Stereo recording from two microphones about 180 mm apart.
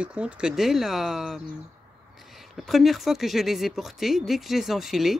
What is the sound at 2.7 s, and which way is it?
Speech, centre (ahead or behind).